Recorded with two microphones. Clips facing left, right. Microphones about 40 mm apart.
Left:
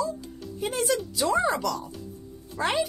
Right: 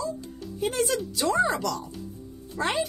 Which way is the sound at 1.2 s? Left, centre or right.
Centre.